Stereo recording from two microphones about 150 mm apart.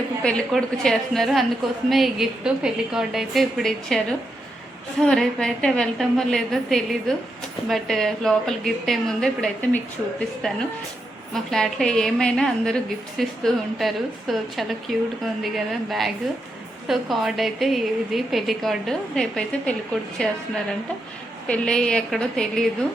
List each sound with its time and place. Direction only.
0.2 s a woman's voice: 5° left (ahead or behind)
21.4 s a woman's voice: 5° left (ahead or behind)